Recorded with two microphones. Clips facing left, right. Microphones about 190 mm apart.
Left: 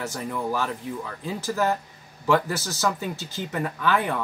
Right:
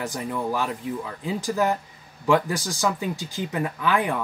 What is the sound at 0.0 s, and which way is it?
Speech, 15° right (ahead or behind).